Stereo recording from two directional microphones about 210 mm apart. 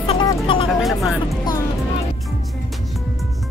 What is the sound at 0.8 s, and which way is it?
Speech, centre (ahead or behind).